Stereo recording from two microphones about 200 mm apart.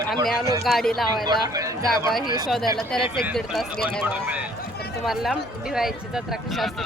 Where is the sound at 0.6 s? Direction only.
Centre (ahead or behind).